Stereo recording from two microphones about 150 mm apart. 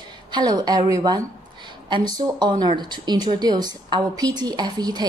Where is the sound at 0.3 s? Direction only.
30° right (ahead or behind).